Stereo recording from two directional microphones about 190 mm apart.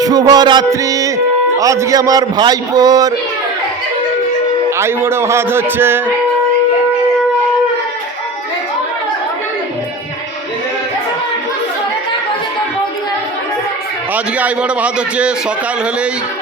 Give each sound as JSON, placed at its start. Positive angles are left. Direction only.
{"t": 0.0, "sound": "a man's voice", "side_deg": -20}
{"t": 4.8, "sound": "a man's voice", "side_deg": -10}
{"t": 14.3, "sound": "a man's voice", "side_deg": -5}